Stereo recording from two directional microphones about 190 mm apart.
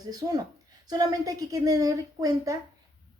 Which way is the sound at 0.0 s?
20° right (ahead or behind).